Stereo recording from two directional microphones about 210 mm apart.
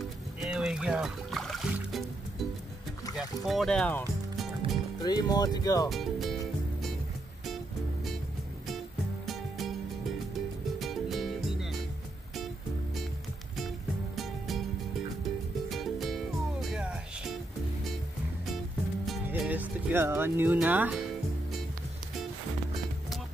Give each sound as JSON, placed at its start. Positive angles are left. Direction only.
{"t": 0.4, "sound": "music", "side_deg": -5}
{"t": 3.4, "sound": "music", "side_deg": 0}
{"t": 5.0, "sound": "speech", "side_deg": 20}
{"t": 5.9, "sound": "speech", "side_deg": 0}
{"t": 7.4, "sound": "music", "side_deg": 0}
{"t": 10.8, "sound": "music", "side_deg": 0}
{"t": 13.6, "sound": "music", "side_deg": 0}
{"t": 19.0, "sound": "music", "side_deg": -5}